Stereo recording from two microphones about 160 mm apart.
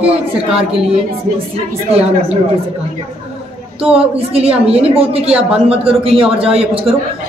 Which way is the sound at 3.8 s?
5° right (ahead or behind).